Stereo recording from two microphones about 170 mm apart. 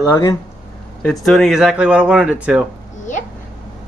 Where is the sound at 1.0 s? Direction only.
Centre (ahead or behind).